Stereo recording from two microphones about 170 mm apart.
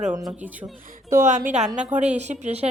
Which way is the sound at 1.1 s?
50° right (ahead or behind).